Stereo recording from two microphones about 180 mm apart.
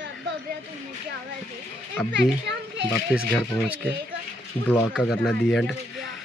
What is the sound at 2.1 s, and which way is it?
Children playing, 75° right (ahead or behind).